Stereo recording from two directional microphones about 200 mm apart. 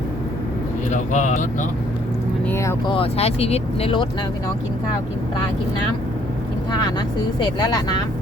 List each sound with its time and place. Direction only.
0.9 s speech: 35° left (ahead or behind)
2.5 s speech: 15° left (ahead or behind)
2.9 s speech: 30° left (ahead or behind)
7.3 s speech: 20° left (ahead or behind)